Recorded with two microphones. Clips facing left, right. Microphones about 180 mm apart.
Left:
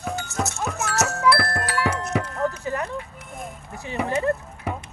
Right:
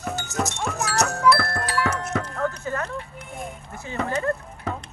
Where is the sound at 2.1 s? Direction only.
15° left (ahead or behind).